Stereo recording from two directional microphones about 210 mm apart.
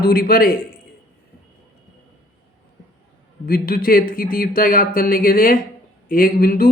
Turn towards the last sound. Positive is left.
turn(degrees=45)  # may be behind; listen again after turning